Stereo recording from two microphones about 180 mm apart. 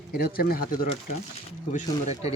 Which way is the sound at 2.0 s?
35° left (ahead or behind).